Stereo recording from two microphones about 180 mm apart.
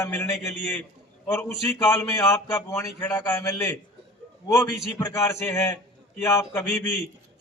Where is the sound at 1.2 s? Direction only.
10° left (ahead or behind).